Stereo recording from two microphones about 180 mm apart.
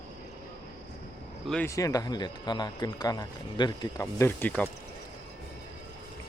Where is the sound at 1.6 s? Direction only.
20° left (ahead or behind).